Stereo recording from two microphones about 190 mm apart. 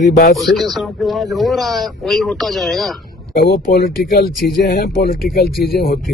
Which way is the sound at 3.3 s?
55° left (ahead or behind).